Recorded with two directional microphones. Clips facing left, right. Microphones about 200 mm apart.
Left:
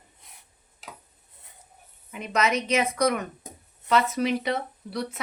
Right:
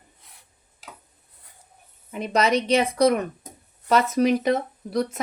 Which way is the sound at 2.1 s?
35° right (ahead or behind).